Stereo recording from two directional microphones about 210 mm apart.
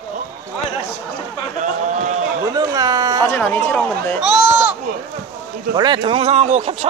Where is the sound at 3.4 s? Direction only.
10° left (ahead or behind).